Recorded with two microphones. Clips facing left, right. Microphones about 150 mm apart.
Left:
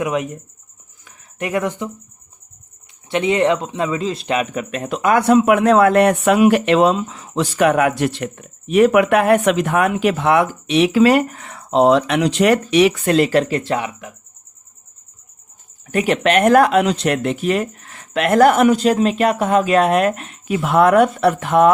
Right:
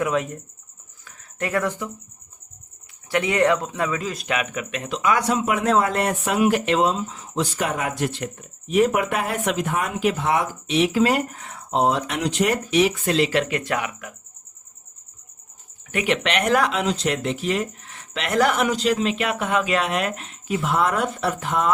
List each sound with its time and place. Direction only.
0.0 s speech: 15° left (ahead or behind)
1.0 s a sound: 15° left (ahead or behind)
3.1 s speech: 20° left (ahead or behind); by 13.1 s 70° left (ahead or behind)
13.1 s speech: 50° left (ahead or behind)
13.4 s speech: 35° left (ahead or behind)
15.9 s speech: 40° left (ahead or behind); by 21.7 s 60° left (ahead or behind)